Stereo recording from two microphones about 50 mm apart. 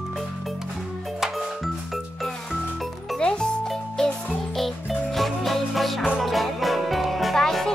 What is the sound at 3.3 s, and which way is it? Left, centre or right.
Music, centre.